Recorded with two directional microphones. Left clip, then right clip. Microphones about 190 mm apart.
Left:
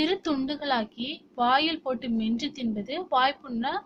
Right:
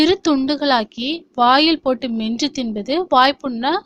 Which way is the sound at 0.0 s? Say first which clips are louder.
Right 11 dB; 50° right (ahead or behind).